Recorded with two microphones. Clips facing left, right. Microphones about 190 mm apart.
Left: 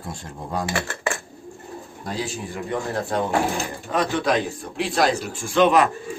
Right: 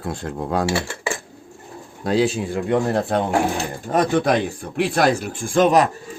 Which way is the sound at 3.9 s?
50° right (ahead or behind).